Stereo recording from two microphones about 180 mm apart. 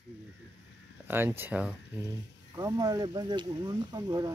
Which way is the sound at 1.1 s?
10° right (ahead or behind).